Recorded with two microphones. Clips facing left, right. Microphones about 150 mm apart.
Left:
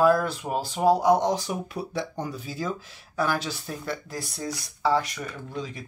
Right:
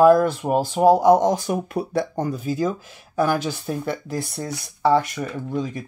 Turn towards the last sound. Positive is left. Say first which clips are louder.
# right 8 dB
turn(degrees=-50)  # may be behind; listen again after turning